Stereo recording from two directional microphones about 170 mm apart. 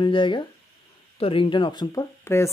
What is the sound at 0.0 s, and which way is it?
Speech, 30° left (ahead or behind).